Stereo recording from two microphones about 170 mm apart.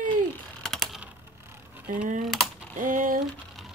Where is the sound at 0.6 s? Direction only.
5° left (ahead or behind).